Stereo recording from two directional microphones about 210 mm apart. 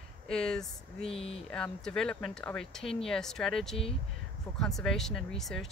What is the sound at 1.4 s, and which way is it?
Speech, 5° left (ahead or behind).